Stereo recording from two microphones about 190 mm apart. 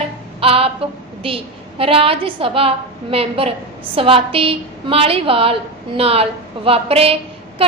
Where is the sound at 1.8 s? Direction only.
30° right (ahead or behind).